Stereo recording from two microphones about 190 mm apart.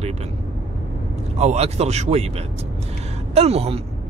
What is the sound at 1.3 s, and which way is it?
Speech, 35° right (ahead or behind).